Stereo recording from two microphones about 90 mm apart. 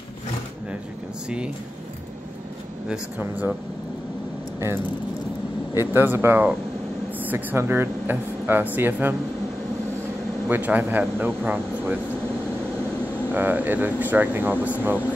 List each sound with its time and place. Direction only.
3.2 s speech: 20° right (ahead or behind)
4.6 s speech: 30° right (ahead or behind)
10.5 s speech: 20° right (ahead or behind)
13.3 s speech: 20° right (ahead or behind)